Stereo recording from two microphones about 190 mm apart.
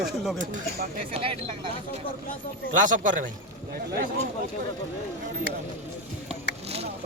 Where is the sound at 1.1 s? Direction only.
30° right (ahead or behind).